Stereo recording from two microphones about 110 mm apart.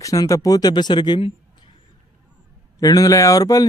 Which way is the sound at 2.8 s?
35° left (ahead or behind).